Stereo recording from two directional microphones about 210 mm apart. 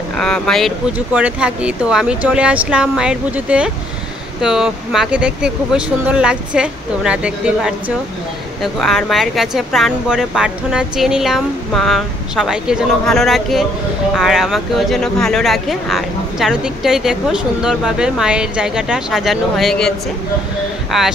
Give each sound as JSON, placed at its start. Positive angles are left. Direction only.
{"t": 0.2, "sound": "speech", "side_deg": 5}
{"t": 8.7, "sound": "speech", "side_deg": 0}
{"t": 20.9, "sound": "speech", "side_deg": 0}